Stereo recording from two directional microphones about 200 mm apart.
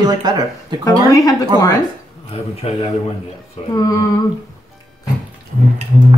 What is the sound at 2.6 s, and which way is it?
Speech, 30° left (ahead or behind).